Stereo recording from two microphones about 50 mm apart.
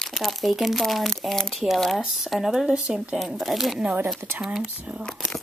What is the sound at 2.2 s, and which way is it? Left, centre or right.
Speech, centre.